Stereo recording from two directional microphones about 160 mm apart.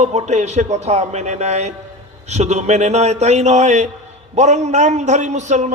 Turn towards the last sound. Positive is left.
turn(degrees=-50)  # may be behind; listen again after turning